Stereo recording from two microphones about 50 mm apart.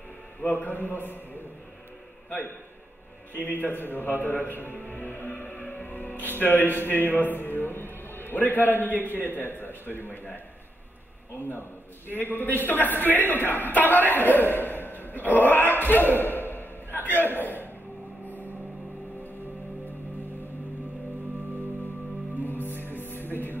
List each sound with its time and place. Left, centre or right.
0.4 s a man's voice: left
3.4 s a man's voice: left
4.7 s music: left
6.3 s a man's voice: left
12.1 s a man's voice: left
22.4 s music: left